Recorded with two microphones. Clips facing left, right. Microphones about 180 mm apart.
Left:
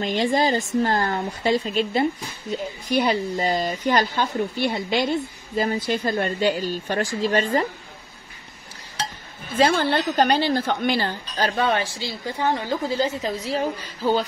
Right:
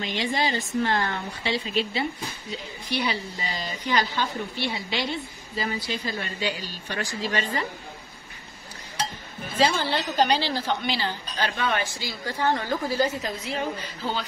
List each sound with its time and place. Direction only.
0.0 s speech: 45° left (ahead or behind)
9.6 s speech: 55° left (ahead or behind); by 12.4 s 30° left (ahead or behind)
12.4 s a woman's voice: 15° left (ahead or behind)